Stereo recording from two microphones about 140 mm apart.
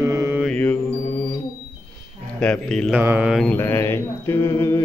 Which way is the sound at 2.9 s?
10° right (ahead or behind).